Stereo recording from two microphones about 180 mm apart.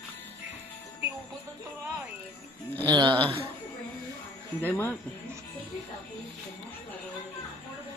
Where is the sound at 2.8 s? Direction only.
25° right (ahead or behind).